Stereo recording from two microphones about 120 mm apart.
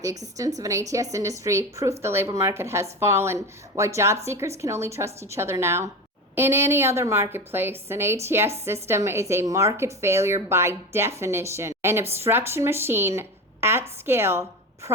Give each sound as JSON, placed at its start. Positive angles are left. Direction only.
{"t": 0.0, "sound": "a woman's voice", "side_deg": -30}